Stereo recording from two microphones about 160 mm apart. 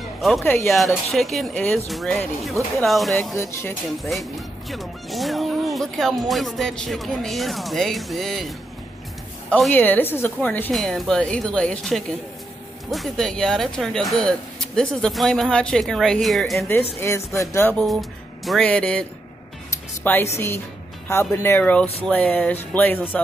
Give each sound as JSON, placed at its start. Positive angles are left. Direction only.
{"t": 0.2, "sound": "a woman's voice", "side_deg": 0}
{"t": 10.7, "sound": "speech", "side_deg": 0}
{"t": 17.4, "sound": "a woman's voice", "side_deg": 15}
{"t": 18.4, "sound": "a woman's voice", "side_deg": 5}
{"t": 19.7, "sound": "music", "side_deg": 10}
{"t": 20.3, "sound": "a woman's voice", "side_deg": 15}